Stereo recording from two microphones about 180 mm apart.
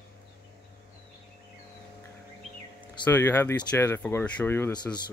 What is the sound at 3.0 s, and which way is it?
Speech, 10° left (ahead or behind).